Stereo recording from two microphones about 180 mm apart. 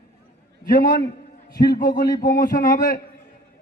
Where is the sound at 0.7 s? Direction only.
50° left (ahead or behind).